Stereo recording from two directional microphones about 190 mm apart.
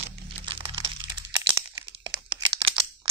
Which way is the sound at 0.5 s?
25° right (ahead or behind).